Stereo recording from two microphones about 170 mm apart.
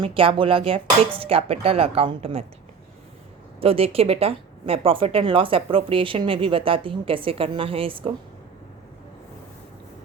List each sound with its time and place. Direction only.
0.0 s speech: 30° right (ahead or behind)
3.6 s speech: 35° right (ahead or behind)